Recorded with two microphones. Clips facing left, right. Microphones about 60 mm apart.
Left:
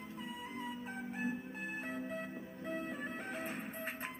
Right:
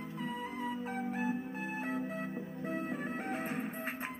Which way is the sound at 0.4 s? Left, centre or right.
Right.